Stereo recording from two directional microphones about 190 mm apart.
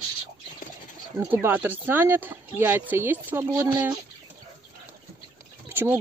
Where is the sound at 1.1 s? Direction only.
10° right (ahead or behind).